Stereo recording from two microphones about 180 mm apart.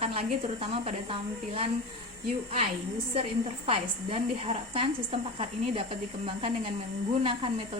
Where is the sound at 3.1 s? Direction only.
35° right (ahead or behind).